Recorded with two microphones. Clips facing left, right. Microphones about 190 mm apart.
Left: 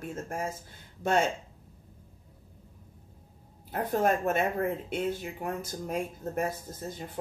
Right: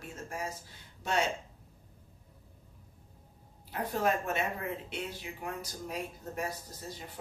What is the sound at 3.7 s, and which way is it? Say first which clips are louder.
Speech: left 4 dB; 50° left (ahead or behind).